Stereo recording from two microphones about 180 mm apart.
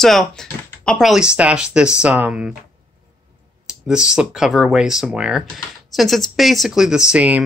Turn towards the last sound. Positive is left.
turn(degrees=-5)  # may be behind; listen again after turning